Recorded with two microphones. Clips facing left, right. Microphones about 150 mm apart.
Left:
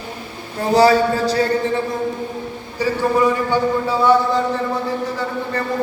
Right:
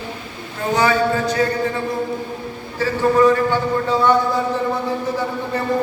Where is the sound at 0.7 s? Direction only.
35° left (ahead or behind).